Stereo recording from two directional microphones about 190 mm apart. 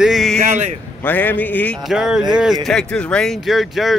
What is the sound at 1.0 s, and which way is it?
Speech, 10° left (ahead or behind).